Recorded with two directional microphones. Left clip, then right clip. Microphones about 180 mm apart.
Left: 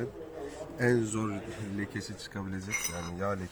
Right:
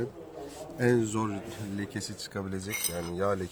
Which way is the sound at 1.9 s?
45° right (ahead or behind).